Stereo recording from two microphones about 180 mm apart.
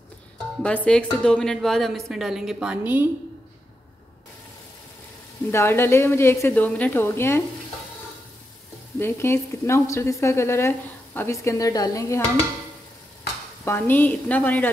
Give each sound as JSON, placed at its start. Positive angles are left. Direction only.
{"t": 0.6, "sound": "a woman's voice", "side_deg": 5}
{"t": 5.5, "sound": "speech", "side_deg": 15}
{"t": 9.0, "sound": "speech", "side_deg": 15}
{"t": 13.7, "sound": "speech", "side_deg": 10}